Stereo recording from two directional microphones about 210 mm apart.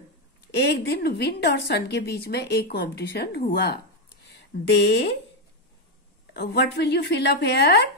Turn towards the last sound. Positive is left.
turn(degrees=50)  # may be behind; listen again after turning